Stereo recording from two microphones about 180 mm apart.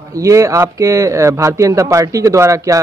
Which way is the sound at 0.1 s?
15° right (ahead or behind).